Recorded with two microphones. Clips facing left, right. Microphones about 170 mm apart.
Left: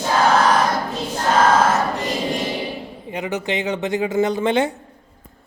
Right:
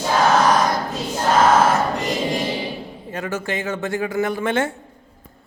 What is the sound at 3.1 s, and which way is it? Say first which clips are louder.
Speech: left 2 dB; 15° left (ahead or behind).